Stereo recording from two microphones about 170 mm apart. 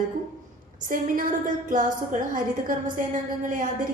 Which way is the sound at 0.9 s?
55° right (ahead or behind).